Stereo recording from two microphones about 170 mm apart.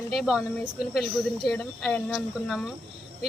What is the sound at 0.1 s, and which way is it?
Speech, centre (ahead or behind).